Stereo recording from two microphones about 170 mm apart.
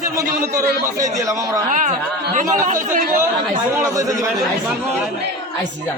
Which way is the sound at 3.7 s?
20° right (ahead or behind).